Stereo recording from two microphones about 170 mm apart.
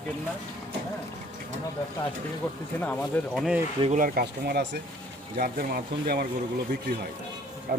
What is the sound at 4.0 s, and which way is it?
Speech, 60° right (ahead or behind).